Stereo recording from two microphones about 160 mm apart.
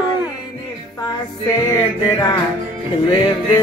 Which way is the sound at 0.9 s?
20° left (ahead or behind).